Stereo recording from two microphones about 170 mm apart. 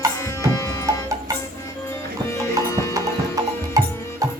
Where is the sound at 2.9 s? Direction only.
20° right (ahead or behind).